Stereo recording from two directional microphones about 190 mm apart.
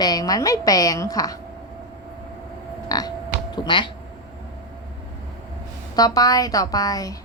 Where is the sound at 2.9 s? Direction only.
20° left (ahead or behind).